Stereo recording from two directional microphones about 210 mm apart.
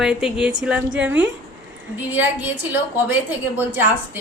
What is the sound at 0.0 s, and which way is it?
A woman's voice, 5° right (ahead or behind).